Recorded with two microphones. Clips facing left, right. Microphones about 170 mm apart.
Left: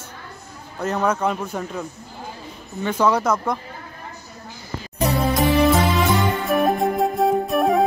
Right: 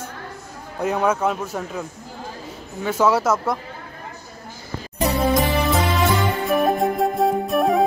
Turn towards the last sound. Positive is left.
turn(degrees=0)  # may be behind; listen again after turning